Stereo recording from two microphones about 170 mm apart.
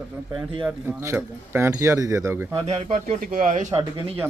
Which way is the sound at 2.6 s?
35° right (ahead or behind).